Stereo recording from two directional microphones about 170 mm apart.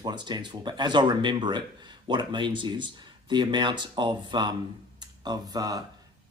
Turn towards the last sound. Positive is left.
turn(degrees=-25)  # may be behind; listen again after turning